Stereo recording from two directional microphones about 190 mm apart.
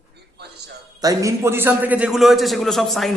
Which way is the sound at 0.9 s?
20° right (ahead or behind).